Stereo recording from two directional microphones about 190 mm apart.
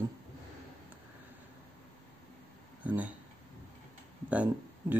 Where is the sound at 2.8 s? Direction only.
10° right (ahead or behind).